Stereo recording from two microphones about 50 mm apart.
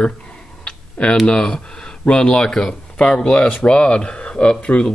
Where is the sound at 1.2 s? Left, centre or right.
Centre.